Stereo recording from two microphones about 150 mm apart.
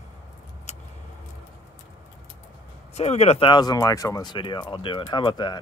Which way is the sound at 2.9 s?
45° left (ahead or behind).